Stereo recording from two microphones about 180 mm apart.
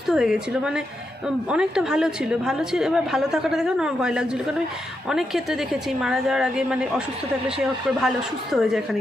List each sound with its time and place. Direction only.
0.1 s a woman's voice: 5° right (ahead or behind)